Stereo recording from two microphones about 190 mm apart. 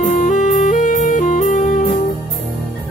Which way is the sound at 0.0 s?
45° left (ahead or behind).